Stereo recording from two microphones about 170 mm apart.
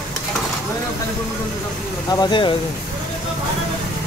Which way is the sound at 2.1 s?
25° left (ahead or behind).